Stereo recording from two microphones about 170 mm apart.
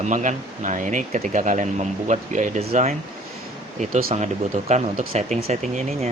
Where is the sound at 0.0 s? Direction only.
45° right (ahead or behind).